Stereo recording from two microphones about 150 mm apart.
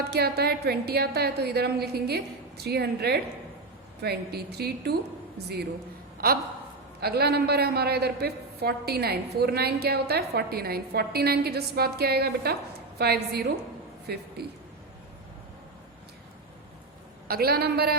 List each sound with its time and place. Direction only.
0.1 s a woman's voice: 90° right
6.2 s a woman's voice: 85° right
17.2 s a woman's voice: 90° right